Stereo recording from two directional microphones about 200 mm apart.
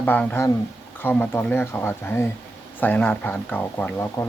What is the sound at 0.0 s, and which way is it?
Speech, 10° left (ahead or behind).